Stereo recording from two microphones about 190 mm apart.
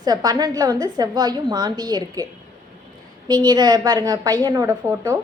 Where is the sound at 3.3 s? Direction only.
20° right (ahead or behind).